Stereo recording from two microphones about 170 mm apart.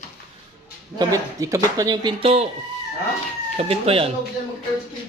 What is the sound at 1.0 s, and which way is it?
Speech, 20° right (ahead or behind).